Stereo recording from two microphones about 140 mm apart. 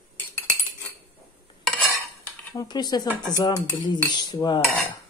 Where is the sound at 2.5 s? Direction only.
30° left (ahead or behind).